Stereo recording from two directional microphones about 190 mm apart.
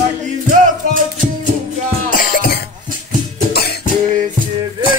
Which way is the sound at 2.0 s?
45° left (ahead or behind).